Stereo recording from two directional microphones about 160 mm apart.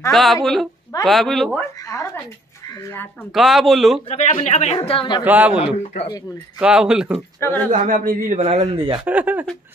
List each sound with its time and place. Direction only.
0.1 s speech: centre (ahead or behind)
3.3 s speech: centre (ahead or behind)
4.1 s speech: 45° left (ahead or behind)
5.2 s speech: 10° right (ahead or behind)
6.6 s speech: 5° right (ahead or behind)
7.3 s speech: 15° left (ahead or behind)
7.7 s a man's voice: 55° right (ahead or behind)
8.4 s speech: 40° right (ahead or behind)
9.0 s speech: 10° right (ahead or behind)